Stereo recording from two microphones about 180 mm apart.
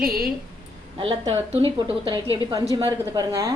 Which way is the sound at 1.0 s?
30° right (ahead or behind).